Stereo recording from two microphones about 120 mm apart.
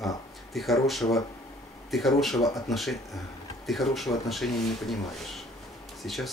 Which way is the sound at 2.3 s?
30° left (ahead or behind).